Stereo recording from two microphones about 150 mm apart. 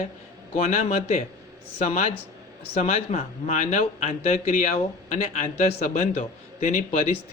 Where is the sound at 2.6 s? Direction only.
40° left (ahead or behind).